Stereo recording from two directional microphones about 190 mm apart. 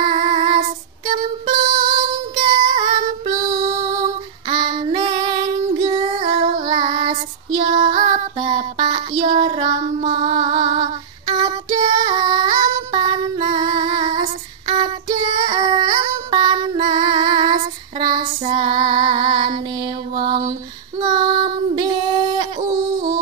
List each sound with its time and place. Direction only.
1.0 s music: 25° right (ahead or behind)
6.6 s child singing: 25° right (ahead or behind)
9.4 s female singing: 25° right (ahead or behind)
14.7 s child singing: 25° right (ahead or behind)
17.0 s female singing: 25° right (ahead or behind)
21.0 s child singing: 25° right (ahead or behind)